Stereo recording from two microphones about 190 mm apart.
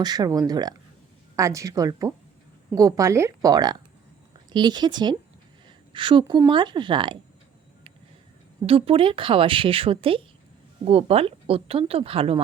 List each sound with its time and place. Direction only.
0.0 s speech: 20° right (ahead or behind)
8.6 s speech: 30° right (ahead or behind)